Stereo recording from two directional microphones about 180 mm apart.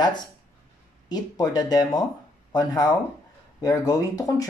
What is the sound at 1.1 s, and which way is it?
Speech, 20° left (ahead or behind).